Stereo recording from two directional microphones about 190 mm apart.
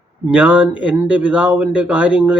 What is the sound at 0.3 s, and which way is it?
Speech, 5° right (ahead or behind).